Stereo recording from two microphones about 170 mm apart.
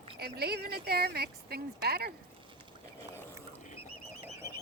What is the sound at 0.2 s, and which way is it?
Speech, 70° right (ahead or behind).